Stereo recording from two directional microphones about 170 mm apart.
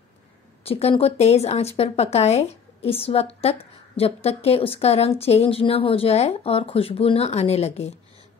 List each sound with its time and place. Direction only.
0.7 s speech: 35° left (ahead or behind)